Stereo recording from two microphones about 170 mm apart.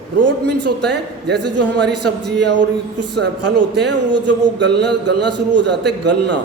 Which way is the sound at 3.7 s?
85° right.